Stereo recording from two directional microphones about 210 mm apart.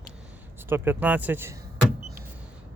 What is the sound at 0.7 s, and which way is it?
Speech, 10° right (ahead or behind).